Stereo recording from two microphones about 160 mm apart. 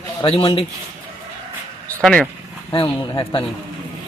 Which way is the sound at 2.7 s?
30° left (ahead or behind).